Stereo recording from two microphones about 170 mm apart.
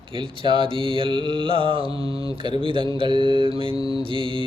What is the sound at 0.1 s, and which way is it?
Mantra, 30° right (ahead or behind).